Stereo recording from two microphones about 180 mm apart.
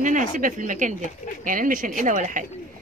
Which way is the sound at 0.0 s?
45° right (ahead or behind).